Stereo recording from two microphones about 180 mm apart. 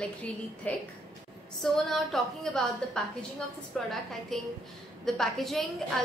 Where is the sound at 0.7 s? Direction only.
10° left (ahead or behind).